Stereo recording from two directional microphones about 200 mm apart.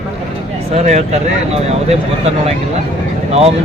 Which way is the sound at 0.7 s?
35° right (ahead or behind).